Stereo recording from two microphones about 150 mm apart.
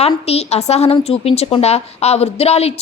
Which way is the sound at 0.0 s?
45° left (ahead or behind).